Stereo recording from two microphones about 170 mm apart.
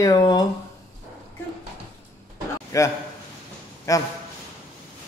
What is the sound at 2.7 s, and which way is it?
Speech, 20° left (ahead or behind).